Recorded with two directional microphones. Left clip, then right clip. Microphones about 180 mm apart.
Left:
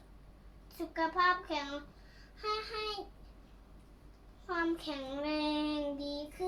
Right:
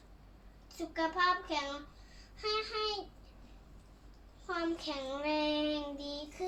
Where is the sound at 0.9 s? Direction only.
15° left (ahead or behind).